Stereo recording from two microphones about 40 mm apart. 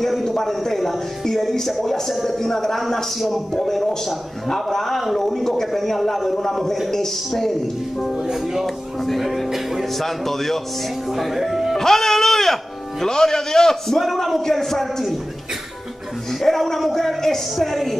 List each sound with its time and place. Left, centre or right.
0.2 s a man's voice: centre
3.5 s a man's voice: centre
8.2 s speech: centre
8.6 s a man's voice: centre
10.0 s a man's voice: centre
11.1 s speech: centre
11.7 s music: centre
13.0 s a man's voice: centre
16.3 s a man's voice: centre